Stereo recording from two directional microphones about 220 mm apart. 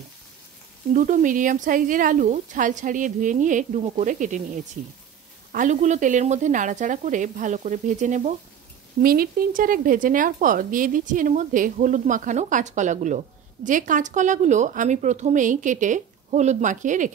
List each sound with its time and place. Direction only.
0.9 s speech: 35° right (ahead or behind)
5.5 s speech: 35° right (ahead or behind)